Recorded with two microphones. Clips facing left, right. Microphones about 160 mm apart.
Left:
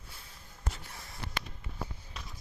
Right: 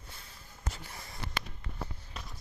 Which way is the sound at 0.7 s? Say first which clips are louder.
Right 1 dB; centre (ahead or behind).